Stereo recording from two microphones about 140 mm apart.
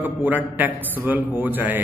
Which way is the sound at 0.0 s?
10° right (ahead or behind).